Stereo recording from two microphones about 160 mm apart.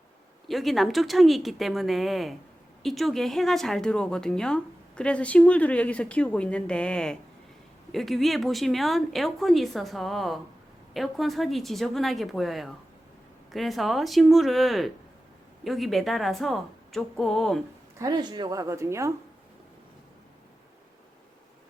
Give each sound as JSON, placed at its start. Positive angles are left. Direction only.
{"t": 0.4, "sound": "a woman's voice", "side_deg": 0}
{"t": 18.0, "sound": "speech", "side_deg": -25}